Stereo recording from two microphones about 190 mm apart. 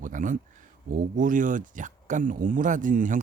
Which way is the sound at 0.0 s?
45° right (ahead or behind).